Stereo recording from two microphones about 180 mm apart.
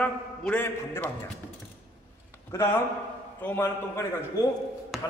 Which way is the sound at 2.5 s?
15° left (ahead or behind).